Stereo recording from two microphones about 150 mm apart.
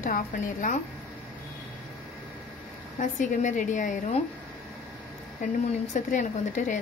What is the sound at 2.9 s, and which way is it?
A woman's voice, 55° left (ahead or behind).